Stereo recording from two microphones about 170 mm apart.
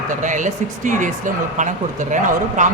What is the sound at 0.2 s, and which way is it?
Speech, 45° right (ahead or behind).